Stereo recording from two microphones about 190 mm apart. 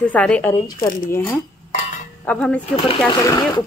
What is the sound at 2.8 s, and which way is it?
Speech, 20° left (ahead or behind).